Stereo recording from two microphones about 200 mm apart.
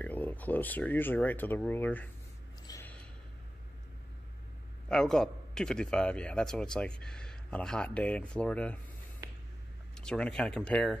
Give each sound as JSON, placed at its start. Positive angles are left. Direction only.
{"t": 0.0, "sound": "speech", "side_deg": 10}
{"t": 2.6, "sound": "a sound", "side_deg": 15}
{"t": 4.8, "sound": "a man's voice", "side_deg": 5}
{"t": 9.9, "sound": "a man's voice", "side_deg": 5}